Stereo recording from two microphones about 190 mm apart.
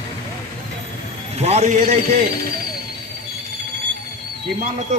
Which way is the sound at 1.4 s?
35° right (ahead or behind).